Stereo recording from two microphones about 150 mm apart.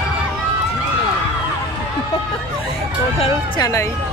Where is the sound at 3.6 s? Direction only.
20° left (ahead or behind).